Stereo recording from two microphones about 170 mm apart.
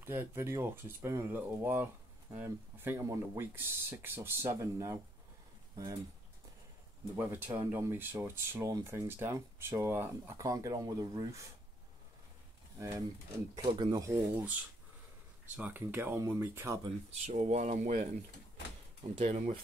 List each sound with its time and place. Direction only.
0.0 s speech: 15° right (ahead or behind)
7.2 s speech: 15° right (ahead or behind)
12.7 s speech: 20° right (ahead or behind)
14.1 s speech: 10° right (ahead or behind)
17.3 s speech: 40° right (ahead or behind)